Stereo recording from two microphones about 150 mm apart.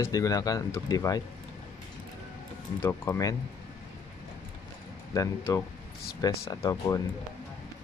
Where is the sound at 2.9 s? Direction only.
20° left (ahead or behind).